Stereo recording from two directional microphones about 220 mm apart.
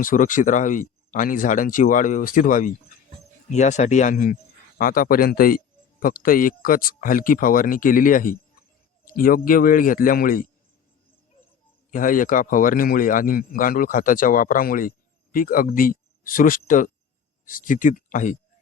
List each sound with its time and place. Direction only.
0.0 s a man's voice: 35° left (ahead or behind)
11.9 s a man's voice: 40° left (ahead or behind)